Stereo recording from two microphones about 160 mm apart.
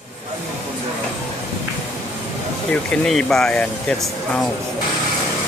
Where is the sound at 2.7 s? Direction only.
5° left (ahead or behind).